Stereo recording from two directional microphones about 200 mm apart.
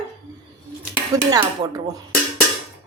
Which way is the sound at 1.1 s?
15° right (ahead or behind).